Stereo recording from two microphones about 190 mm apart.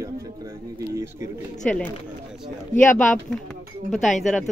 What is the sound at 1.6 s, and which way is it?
Speech, 5° left (ahead or behind).